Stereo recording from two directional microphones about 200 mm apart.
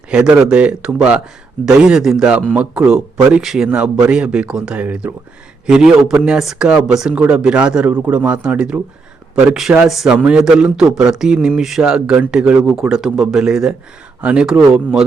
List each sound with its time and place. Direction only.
0.1 s a man's voice: 5° right (ahead or behind)